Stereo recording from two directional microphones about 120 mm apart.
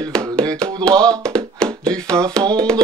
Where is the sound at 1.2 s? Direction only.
5° left (ahead or behind).